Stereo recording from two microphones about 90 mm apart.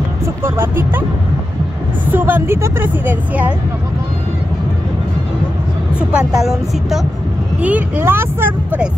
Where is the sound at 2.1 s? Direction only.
20° right (ahead or behind).